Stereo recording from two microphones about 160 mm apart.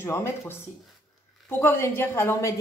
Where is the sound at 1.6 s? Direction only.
15° left (ahead or behind).